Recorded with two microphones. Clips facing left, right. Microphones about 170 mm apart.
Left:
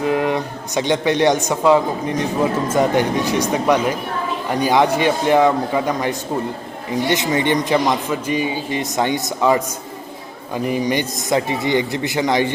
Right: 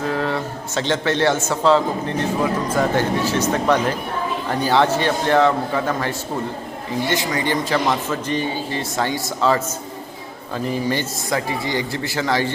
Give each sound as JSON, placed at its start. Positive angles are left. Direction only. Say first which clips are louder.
{"t": 0.0, "sound": "a man's voice", "louder": "left 4 dB", "side_deg": 15}
{"t": 10.7, "sound": "speech", "louder": "left 3 dB", "side_deg": 15}